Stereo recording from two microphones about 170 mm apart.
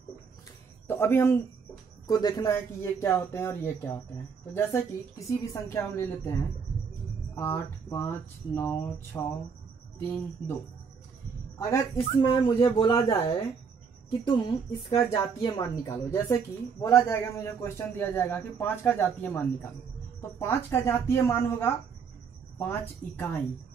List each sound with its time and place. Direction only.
0.8 s a man's voice: 15° left (ahead or behind)
5.5 s a man's voice: 15° left (ahead or behind)
7.3 s a man's voice: 15° left (ahead or behind)
12.1 s a woman's voice: 30° left (ahead or behind); by 23.3 s 10° left (ahead or behind)